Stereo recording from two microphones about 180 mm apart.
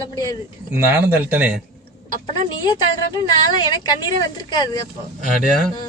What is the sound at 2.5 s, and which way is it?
Speech, 25° left (ahead or behind).